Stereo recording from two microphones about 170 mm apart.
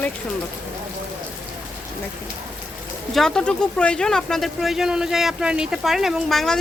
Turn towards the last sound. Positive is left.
turn(degrees=0)  # may be behind; listen again after turning